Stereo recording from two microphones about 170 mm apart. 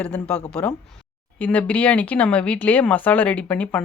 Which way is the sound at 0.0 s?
5° left (ahead or behind).